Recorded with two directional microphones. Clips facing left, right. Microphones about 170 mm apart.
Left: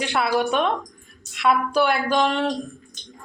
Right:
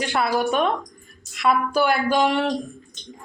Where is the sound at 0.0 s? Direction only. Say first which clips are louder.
Even; centre (ahead or behind).